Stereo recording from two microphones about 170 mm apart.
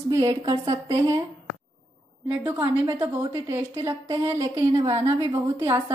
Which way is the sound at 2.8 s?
20° right (ahead or behind).